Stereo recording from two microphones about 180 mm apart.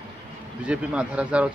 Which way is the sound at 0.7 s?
5° right (ahead or behind).